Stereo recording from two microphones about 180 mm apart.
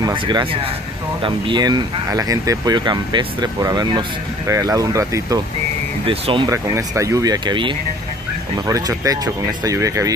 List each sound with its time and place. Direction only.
0.0 s speech: 25° right (ahead or behind)
6.0 s speech: 30° right (ahead or behind)
6.5 s speech: 15° right (ahead or behind)